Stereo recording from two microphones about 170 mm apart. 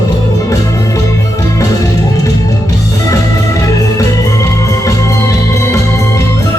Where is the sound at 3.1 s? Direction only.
20° left (ahead or behind).